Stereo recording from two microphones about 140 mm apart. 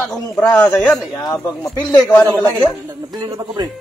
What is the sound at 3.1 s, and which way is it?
Speech, 30° right (ahead or behind).